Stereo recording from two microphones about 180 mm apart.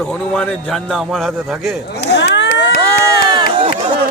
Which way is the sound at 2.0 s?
65° left (ahead or behind).